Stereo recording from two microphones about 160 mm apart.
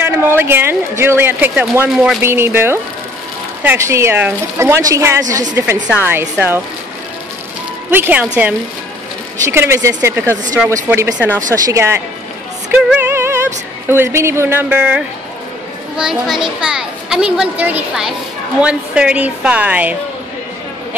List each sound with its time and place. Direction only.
0.0 s a woman's voice: 15° right (ahead or behind)
7.9 s a woman's voice: 10° right (ahead or behind)
9.4 s a woman's voice: 15° right (ahead or behind)
12.7 s music: 10° right (ahead or behind)
13.8 s a woman's voice: 15° right (ahead or behind)